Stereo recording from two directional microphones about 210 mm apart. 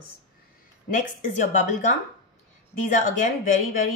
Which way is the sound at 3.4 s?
40° left (ahead or behind).